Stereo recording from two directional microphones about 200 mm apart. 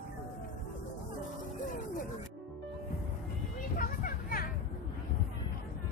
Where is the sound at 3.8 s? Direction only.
45° left (ahead or behind).